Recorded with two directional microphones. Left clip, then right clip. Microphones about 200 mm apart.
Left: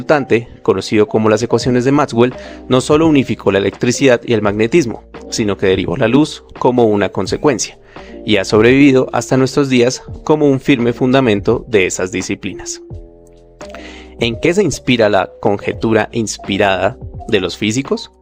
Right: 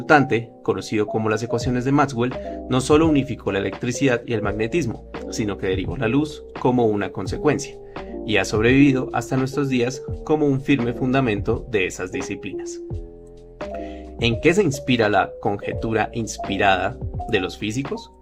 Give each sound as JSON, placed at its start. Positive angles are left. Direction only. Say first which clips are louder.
{"t": 0.0, "sound": "speech", "louder": "left 4 dB", "side_deg": 45}